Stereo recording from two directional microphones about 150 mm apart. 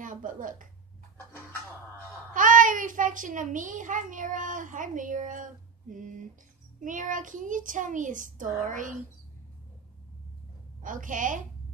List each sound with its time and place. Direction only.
0.0 s a sound: 65° right (ahead or behind)
2.3 s a child's voice: 60° right (ahead or behind)
10.8 s a child's voice: 60° right (ahead or behind)